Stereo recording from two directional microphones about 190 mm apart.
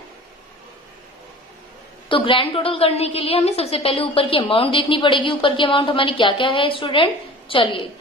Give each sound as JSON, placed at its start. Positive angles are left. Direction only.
{"t": 2.0, "sound": "a woman's voice", "side_deg": 25}